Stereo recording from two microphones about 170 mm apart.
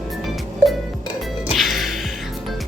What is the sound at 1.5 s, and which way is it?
Music, centre (ahead or behind).